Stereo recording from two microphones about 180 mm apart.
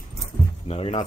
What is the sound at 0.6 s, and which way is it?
Speech, 30° left (ahead or behind).